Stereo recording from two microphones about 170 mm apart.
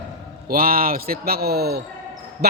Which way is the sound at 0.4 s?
60° right (ahead or behind).